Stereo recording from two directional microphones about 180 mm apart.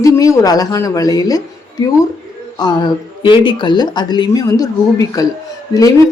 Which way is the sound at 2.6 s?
25° left (ahead or behind).